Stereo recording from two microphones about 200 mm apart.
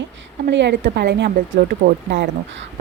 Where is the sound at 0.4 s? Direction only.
60° right (ahead or behind).